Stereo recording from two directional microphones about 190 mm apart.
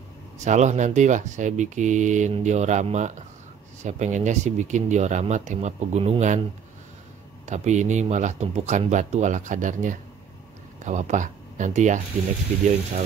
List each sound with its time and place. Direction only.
0.4 s speech: 40° right (ahead or behind)
7.4 s speech: 40° right (ahead or behind)